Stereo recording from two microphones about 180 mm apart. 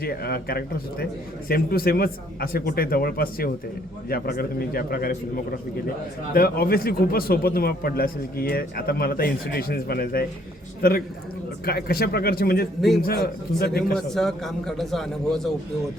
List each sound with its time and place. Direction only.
0.0 s a man's voice: 55° left (ahead or behind)
13.9 s a man's voice: centre (ahead or behind)